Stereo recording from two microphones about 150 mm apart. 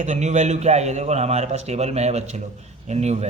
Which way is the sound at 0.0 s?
50° right (ahead or behind).